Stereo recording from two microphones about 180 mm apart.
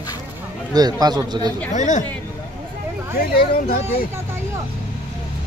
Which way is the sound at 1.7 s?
40° left (ahead or behind).